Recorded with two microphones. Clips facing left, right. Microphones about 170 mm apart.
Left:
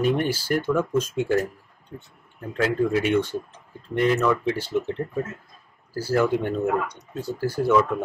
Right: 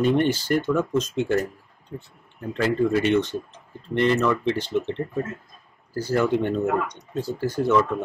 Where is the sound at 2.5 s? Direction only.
5° left (ahead or behind).